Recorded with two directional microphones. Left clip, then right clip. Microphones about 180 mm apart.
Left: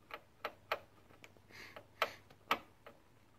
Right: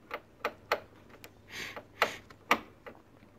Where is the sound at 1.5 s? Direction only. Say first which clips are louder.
Right 13 dB; 25° right (ahead or behind).